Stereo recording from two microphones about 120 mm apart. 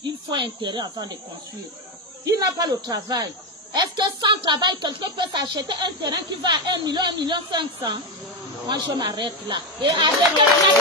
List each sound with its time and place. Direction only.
0.0 s speech: 40° right (ahead or behind)
2.2 s speech: 30° right (ahead or behind)